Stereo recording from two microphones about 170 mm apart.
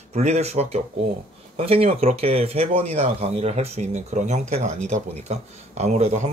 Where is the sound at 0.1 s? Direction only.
40° right (ahead or behind).